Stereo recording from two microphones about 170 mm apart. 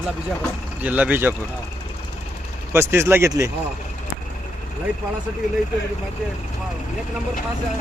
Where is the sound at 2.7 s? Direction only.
15° right (ahead or behind).